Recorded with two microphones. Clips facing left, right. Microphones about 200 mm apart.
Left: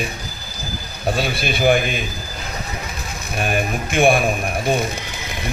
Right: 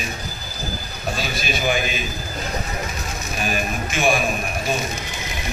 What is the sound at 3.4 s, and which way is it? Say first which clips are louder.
Speech: left 3 dB; 55° left (ahead or behind).